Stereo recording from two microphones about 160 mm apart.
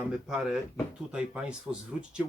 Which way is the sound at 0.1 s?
5° right (ahead or behind).